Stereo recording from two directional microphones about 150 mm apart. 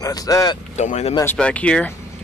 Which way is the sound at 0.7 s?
50° left (ahead or behind).